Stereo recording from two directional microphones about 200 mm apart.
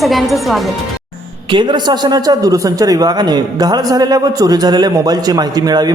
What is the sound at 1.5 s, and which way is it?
A man's voice, 25° right (ahead or behind).